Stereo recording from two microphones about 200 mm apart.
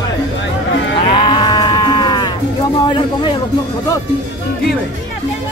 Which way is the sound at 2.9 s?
25° left (ahead or behind).